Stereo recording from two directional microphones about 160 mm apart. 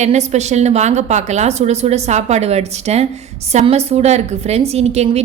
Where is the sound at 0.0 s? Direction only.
45° right (ahead or behind).